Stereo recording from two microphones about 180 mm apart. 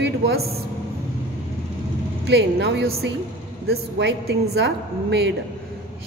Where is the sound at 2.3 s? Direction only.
70° right (ahead or behind).